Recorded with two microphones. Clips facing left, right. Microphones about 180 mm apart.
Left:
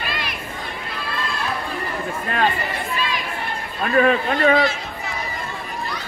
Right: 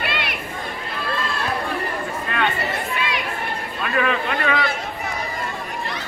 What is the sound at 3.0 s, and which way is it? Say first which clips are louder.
Chatter: even; 70° right (ahead or behind).